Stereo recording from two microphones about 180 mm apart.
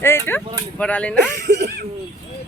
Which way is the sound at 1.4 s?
70° right (ahead or behind).